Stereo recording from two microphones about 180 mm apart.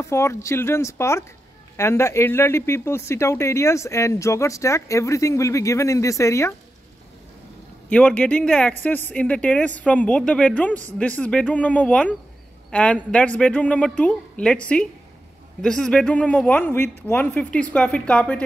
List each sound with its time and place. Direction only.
0.0 s speech: 15° left (ahead or behind)
7.9 s speech: 5° left (ahead or behind)
15.6 s speech: centre (ahead or behind)